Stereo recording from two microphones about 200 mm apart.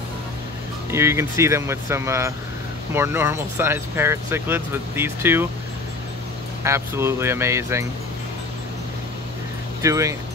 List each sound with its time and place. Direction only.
0.9 s speech: 15° right (ahead or behind)
6.6 s speech: 15° right (ahead or behind)
9.8 s speech: 15° right (ahead or behind)